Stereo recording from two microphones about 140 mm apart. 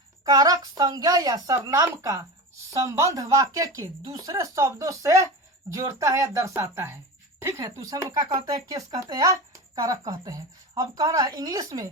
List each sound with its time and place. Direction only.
0.3 s speech: 25° right (ahead or behind)
7.6 s speech: 30° right (ahead or behind)